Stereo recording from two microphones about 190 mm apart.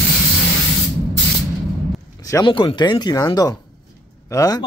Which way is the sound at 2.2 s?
20° left (ahead or behind).